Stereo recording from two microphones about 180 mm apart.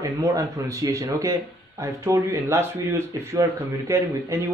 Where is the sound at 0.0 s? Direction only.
20° right (ahead or behind).